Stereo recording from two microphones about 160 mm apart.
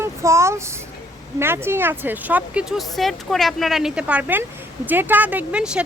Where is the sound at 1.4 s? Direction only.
15° right (ahead or behind).